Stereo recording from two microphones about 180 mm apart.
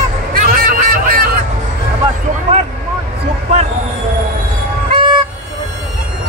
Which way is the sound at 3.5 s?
35° right (ahead or behind).